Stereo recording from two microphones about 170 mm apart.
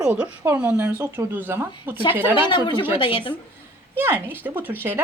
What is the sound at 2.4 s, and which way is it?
Speech, 25° left (ahead or behind).